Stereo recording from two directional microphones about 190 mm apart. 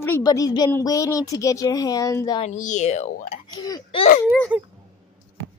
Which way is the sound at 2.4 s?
40° left (ahead or behind).